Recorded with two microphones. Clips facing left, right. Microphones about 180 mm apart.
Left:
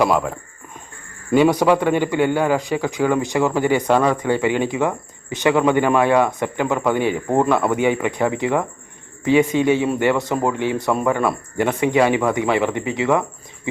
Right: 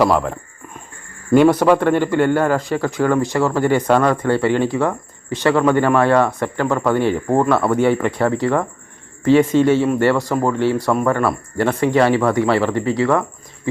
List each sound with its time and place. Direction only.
0.0 s speech: 5° left (ahead or behind)
1.4 s a man's voice: 10° left (ahead or behind)